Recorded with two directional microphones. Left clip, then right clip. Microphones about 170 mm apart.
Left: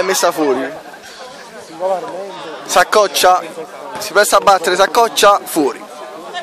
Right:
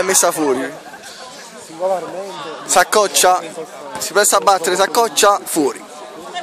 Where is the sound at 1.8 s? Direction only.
45° right (ahead or behind).